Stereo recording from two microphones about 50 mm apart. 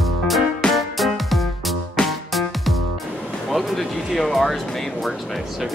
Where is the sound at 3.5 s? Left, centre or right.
Centre.